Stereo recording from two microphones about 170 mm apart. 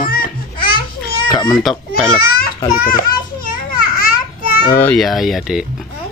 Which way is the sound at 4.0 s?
55° left (ahead or behind).